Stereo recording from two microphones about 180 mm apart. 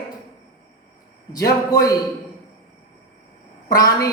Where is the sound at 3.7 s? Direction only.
20° left (ahead or behind).